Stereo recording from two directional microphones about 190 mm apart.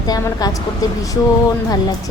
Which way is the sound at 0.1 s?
20° left (ahead or behind).